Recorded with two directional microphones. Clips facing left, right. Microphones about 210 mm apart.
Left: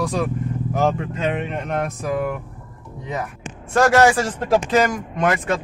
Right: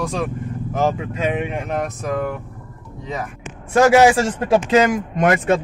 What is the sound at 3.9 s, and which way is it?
Speech, 20° right (ahead or behind).